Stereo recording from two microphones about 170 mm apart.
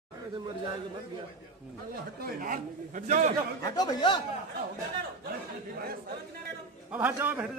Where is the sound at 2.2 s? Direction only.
50° right (ahead or behind).